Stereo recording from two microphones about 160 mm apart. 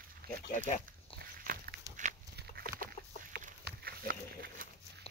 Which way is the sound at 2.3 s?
65° right (ahead or behind).